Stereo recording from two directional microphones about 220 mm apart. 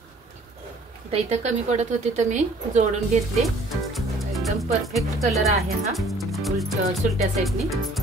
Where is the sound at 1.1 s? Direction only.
30° right (ahead or behind).